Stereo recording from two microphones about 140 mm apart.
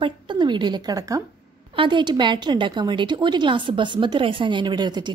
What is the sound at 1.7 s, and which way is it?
A woman's voice, 35° right (ahead or behind).